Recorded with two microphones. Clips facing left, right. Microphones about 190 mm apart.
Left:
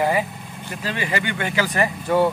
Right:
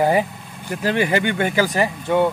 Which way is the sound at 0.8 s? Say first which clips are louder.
Right 7 dB; 55° right (ahead or behind).